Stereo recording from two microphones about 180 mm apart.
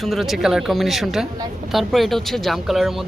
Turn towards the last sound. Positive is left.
turn(degrees=0)  # may be behind; listen again after turning